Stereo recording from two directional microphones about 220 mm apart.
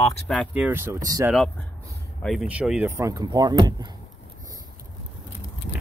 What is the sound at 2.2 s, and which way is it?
Speech, 5° right (ahead or behind).